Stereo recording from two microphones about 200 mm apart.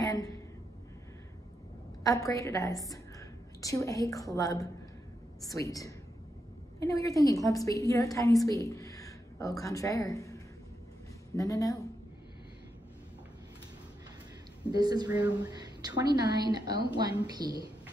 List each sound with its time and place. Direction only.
0.0 s a sound: 15° left (ahead or behind)
2.0 s a woman's voice: 15° left (ahead or behind)
14.7 s a woman's voice: 20° right (ahead or behind)